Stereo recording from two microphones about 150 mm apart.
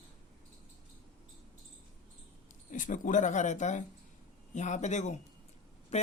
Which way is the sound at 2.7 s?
60° left (ahead or behind).